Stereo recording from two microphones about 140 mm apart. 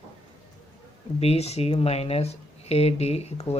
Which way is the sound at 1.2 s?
45° left (ahead or behind).